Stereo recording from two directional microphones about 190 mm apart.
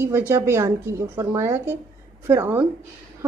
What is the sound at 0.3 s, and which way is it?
Speech, 15° right (ahead or behind).